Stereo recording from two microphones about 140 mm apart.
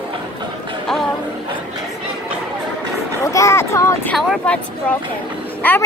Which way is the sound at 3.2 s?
20° left (ahead or behind).